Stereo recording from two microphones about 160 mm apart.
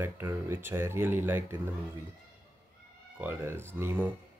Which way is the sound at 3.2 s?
15° right (ahead or behind).